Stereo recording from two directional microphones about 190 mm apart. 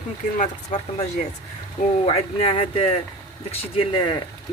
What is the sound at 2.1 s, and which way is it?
Speech, 30° left (ahead or behind).